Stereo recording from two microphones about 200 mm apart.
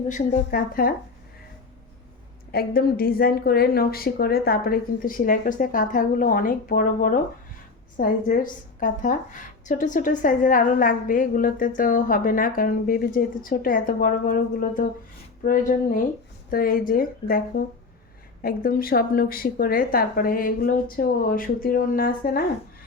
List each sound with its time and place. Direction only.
0.1 s a woman's voice: 40° left (ahead or behind)
2.5 s a woman's voice: 50° left (ahead or behind)